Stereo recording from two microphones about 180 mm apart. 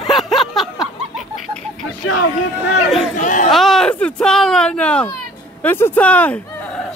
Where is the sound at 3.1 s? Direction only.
45° left (ahead or behind).